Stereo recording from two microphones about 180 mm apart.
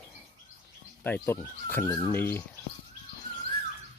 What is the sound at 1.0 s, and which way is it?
Speech, 10° left (ahead or behind).